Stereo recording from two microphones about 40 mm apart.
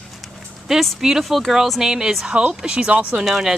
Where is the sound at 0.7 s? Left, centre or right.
Centre; by 2.9 s right.